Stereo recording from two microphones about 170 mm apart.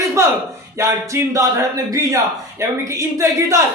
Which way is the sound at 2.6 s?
20° right (ahead or behind).